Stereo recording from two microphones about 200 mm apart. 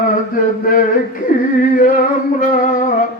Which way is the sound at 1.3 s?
45° left (ahead or behind).